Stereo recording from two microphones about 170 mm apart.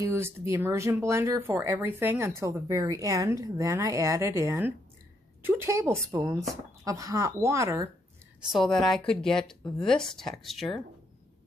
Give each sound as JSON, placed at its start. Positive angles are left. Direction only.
{"t": 0.0, "sound": "speech", "side_deg": -15}
{"t": 8.4, "sound": "a woman's voice", "side_deg": 0}